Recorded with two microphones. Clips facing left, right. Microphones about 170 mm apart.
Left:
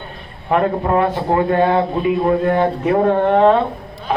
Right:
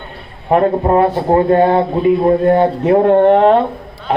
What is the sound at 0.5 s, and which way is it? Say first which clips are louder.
A man's voice: right 4 dB; 30° right (ahead or behind).